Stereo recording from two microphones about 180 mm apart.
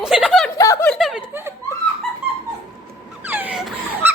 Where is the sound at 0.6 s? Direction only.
15° left (ahead or behind).